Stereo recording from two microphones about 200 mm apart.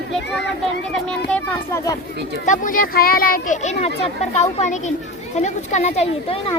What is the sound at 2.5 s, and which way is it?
Speech, 40° left (ahead or behind).